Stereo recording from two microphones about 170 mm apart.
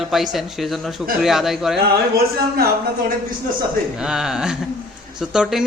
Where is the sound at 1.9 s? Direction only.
65° right (ahead or behind).